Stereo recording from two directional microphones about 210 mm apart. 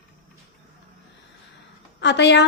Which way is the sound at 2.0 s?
55° left (ahead or behind).